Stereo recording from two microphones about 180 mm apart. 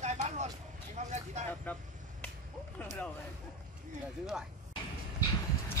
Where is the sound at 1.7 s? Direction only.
10° left (ahead or behind).